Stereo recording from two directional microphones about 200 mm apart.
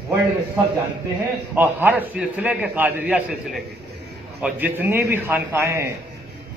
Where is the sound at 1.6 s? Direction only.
10° right (ahead or behind).